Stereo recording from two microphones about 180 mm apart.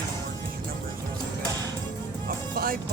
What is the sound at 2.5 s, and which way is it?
Music, 55° right (ahead or behind).